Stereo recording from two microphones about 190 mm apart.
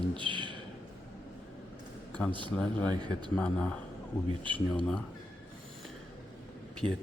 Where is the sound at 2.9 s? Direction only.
20° right (ahead or behind).